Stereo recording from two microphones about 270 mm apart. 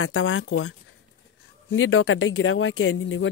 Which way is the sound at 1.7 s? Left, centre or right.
Left.